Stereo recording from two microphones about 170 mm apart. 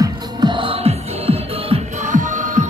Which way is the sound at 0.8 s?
35° right (ahead or behind).